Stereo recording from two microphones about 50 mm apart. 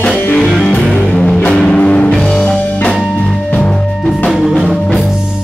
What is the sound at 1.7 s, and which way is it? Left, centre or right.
Music, left.